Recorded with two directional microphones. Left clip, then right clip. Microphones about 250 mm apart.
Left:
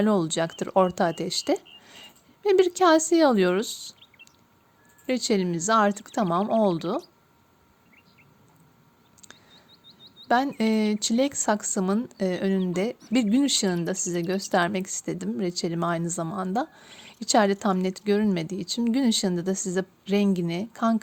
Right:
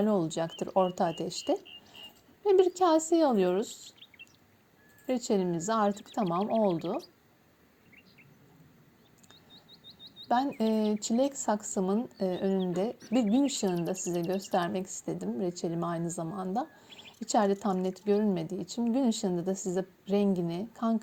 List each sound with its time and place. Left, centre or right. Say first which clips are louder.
0.0 s a woman's voice: left 5 dB; left
5.0 s speech: left 4 dB; left
9.8 s bird: even; centre
10.2 s speech: left 5 dB; left